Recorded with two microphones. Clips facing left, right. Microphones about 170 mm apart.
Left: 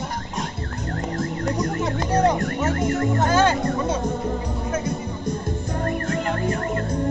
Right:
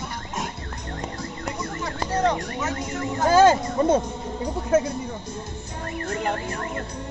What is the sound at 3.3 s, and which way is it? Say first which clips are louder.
Speech: right 5 dB; 40° right (ahead or behind).